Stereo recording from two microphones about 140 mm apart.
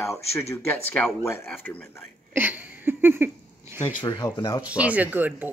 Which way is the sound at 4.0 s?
30° left (ahead or behind).